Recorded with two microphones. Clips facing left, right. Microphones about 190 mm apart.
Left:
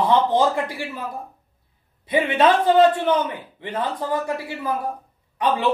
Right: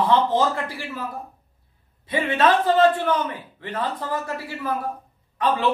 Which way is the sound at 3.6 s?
15° left (ahead or behind).